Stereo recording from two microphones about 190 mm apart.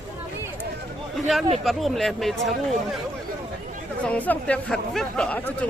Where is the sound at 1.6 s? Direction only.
Centre (ahead or behind).